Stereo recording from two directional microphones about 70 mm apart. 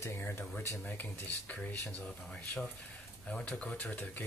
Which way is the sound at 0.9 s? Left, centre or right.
Left.